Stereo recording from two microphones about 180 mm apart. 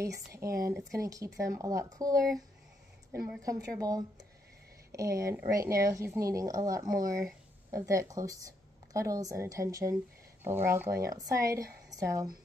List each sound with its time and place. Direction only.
0.0 s a woman's voice: 15° right (ahead or behind)